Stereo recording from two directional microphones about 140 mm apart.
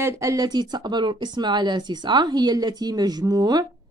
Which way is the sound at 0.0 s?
25° right (ahead or behind).